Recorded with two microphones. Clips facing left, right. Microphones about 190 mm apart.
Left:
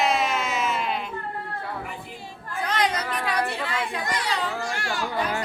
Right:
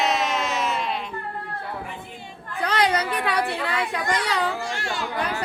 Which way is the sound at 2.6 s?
70° right (ahead or behind).